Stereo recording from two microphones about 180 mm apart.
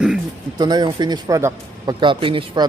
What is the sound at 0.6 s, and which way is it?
A man's voice, 25° right (ahead or behind).